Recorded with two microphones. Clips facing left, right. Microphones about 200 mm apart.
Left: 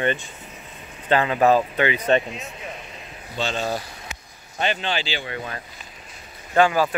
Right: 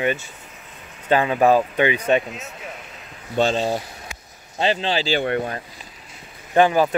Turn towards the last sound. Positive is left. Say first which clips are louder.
# right 2 dB
turn(degrees=-20)  # may be behind; listen again after turning